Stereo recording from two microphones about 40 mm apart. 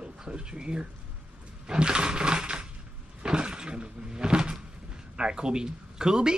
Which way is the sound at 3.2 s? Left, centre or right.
Right.